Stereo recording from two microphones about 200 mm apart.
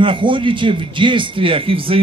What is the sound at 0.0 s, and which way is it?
Speech, 25° right (ahead or behind).